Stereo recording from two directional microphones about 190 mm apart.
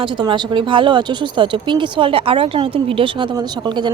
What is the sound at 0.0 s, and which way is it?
Speech, 25° right (ahead or behind).